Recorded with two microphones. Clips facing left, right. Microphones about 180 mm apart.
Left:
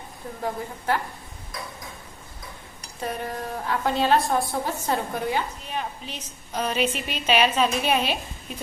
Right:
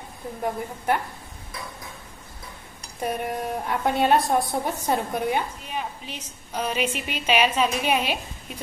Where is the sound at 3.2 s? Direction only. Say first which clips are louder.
Right 2 dB; 20° right (ahead or behind).